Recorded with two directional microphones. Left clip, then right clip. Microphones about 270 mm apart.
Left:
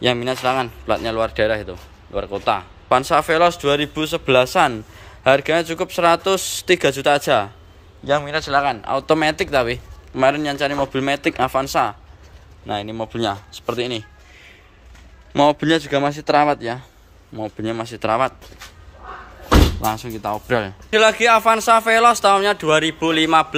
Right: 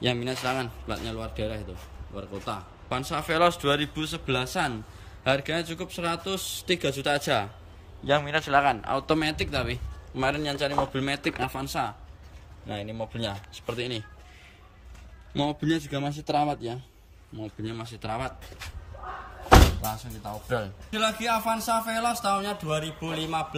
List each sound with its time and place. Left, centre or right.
0.0 s speech: centre
15.3 s speech: centre
15.8 s speech: left
17.4 s speech: centre
20.9 s speech: centre